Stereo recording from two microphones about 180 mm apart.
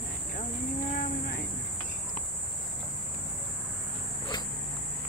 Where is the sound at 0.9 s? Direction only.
55° left (ahead or behind).